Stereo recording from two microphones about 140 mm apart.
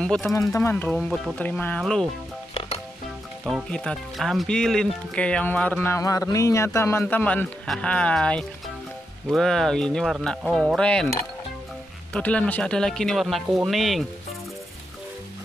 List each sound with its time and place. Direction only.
0.0 s speech: 5° left (ahead or behind)
0.3 s speech: 20° left (ahead or behind)
0.9 s speech: centre (ahead or behind)
1.4 s speech: 10° left (ahead or behind)
3.7 s speech: 5° left (ahead or behind)
12.1 s speech: 10° left (ahead or behind)